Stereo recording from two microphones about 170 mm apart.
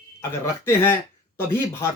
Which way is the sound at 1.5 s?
15° left (ahead or behind).